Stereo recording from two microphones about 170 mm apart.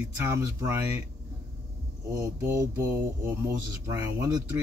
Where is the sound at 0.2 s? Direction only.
15° right (ahead or behind).